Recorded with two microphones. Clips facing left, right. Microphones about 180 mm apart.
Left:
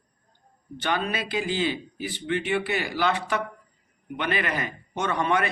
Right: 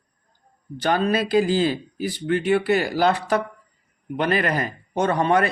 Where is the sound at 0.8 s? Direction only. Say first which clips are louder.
Right 7 dB; 35° right (ahead or behind).